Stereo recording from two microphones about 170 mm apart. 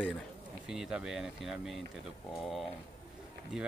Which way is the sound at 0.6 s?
5° right (ahead or behind).